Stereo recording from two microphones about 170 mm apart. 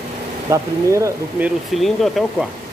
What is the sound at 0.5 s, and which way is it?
A man's voice, 15° right (ahead or behind).